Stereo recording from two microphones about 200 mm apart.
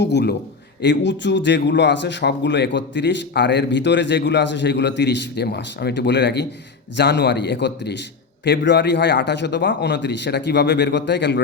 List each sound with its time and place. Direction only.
0.0 s speech: 60° left (ahead or behind)